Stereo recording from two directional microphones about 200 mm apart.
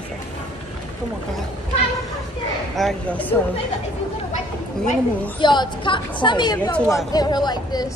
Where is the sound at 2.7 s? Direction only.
5° left (ahead or behind).